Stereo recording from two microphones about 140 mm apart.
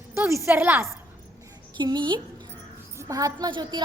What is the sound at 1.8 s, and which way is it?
Speech, 35° right (ahead or behind).